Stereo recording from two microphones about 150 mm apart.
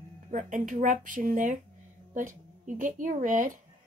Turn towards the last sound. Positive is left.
turn(degrees=-60)  # may be behind; listen again after turning